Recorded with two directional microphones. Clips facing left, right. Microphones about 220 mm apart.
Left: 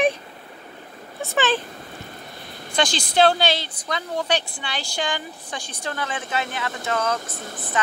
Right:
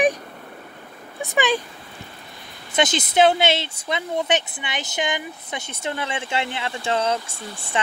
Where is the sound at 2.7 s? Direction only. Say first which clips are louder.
Right 1 dB; 20° right (ahead or behind).